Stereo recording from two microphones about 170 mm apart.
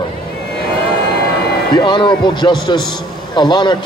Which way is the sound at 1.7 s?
25° left (ahead or behind).